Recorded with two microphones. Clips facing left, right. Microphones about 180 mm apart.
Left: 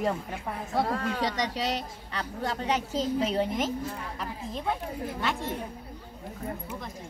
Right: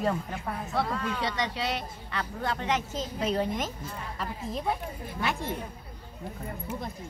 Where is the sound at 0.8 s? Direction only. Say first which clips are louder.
Left 3 dB; 45° left (ahead or behind); by 3.7 s 30° left (ahead or behind).